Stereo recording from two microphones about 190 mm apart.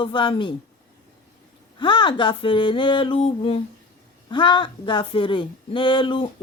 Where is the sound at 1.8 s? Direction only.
25° left (ahead or behind).